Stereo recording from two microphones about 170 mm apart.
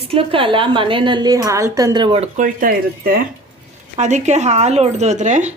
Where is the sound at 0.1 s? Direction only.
30° right (ahead or behind); by 3.2 s 60° right (ahead or behind).